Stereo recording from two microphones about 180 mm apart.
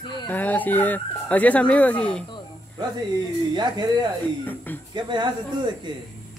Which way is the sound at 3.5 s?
25° right (ahead or behind).